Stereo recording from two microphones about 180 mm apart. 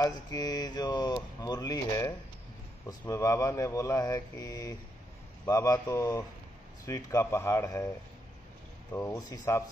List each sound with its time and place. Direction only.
0.0 s speech: 20° left (ahead or behind)
8.9 s speech: 15° left (ahead or behind)